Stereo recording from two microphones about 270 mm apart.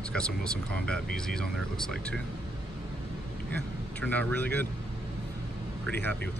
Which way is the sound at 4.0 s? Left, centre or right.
Centre.